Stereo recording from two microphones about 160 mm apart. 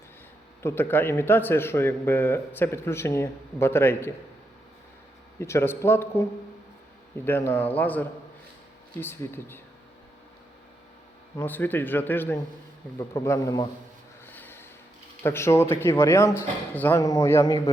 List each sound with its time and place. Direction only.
0.6 s a man's voice: 15° left (ahead or behind)
5.4 s a man's voice: 15° left (ahead or behind)
7.3 s a man's voice: 15° left (ahead or behind)
11.3 s a man's voice: 10° left (ahead or behind)
14.3 s snort: 10° left (ahead or behind)
15.2 s a man's voice: 15° left (ahead or behind)